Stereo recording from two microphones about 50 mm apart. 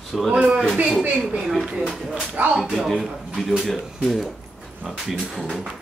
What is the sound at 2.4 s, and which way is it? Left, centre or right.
Speech, right.